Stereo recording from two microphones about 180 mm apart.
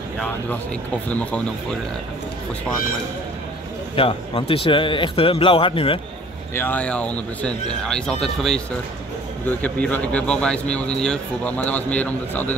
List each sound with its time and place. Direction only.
1.0 s speech: 10° left (ahead or behind)
3.9 s speech: 30° left (ahead or behind)
6.5 s speech: 10° left (ahead or behind)